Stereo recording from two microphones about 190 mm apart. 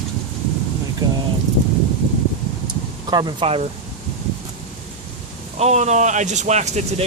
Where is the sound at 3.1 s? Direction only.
25° right (ahead or behind).